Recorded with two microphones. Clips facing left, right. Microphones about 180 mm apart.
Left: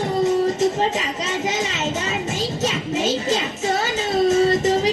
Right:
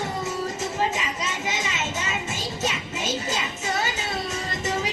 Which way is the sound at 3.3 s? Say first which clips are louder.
Left 7 dB; 40° left (ahead or behind).